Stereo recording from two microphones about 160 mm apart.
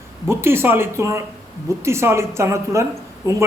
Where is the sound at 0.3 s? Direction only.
15° right (ahead or behind).